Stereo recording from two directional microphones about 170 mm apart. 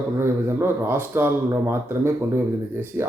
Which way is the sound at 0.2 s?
15° right (ahead or behind).